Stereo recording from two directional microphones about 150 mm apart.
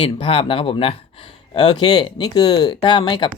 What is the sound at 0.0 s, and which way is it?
Speech, 40° left (ahead or behind).